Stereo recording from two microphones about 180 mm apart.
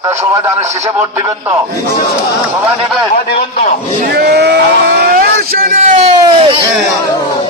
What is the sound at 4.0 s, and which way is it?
Speech, 65° right (ahead or behind).